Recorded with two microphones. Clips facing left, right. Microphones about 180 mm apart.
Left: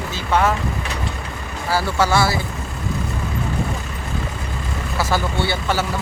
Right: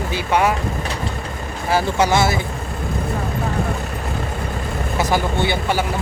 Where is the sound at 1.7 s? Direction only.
20° right (ahead or behind).